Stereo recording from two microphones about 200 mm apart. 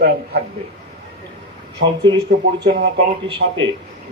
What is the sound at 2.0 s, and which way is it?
Speech, 25° right (ahead or behind).